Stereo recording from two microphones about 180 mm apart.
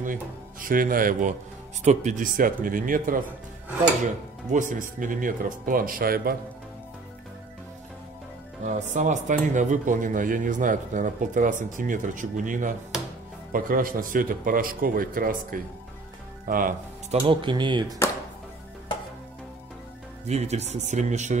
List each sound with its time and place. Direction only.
0.0 s speech: 50° right (ahead or behind)
4.5 s speech: 45° right (ahead or behind)
8.6 s speech: 45° right (ahead or behind)
17.1 s speech: 30° right (ahead or behind)
20.2 s speech: 35° right (ahead or behind)